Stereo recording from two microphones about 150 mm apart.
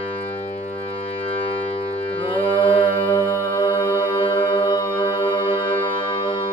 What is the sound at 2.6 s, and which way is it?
Music, 30° left (ahead or behind).